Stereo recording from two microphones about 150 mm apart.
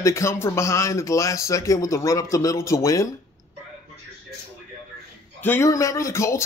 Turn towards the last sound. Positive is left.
turn(degrees=20)  # may be behind; listen again after turning